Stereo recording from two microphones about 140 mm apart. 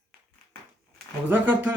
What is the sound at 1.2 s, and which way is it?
Speech, 15° right (ahead or behind).